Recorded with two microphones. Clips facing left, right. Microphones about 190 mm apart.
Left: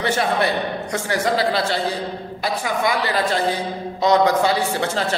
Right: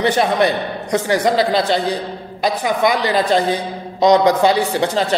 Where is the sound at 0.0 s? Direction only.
20° right (ahead or behind).